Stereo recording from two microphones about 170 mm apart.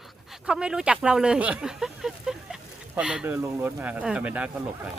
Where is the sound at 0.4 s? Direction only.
5° right (ahead or behind).